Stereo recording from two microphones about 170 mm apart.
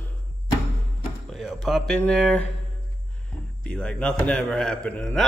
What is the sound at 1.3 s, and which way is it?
Speech, centre (ahead or behind).